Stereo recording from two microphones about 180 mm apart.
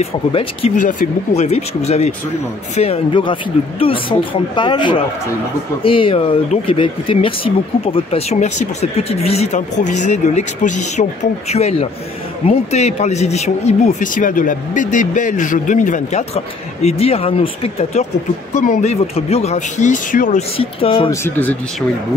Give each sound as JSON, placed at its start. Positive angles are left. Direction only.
{"t": 0.0, "sound": "speech", "side_deg": 30}
{"t": 0.7, "sound": "speech", "side_deg": 45}
{"t": 20.5, "sound": "speech", "side_deg": 30}
{"t": 21.1, "sound": "speech", "side_deg": 10}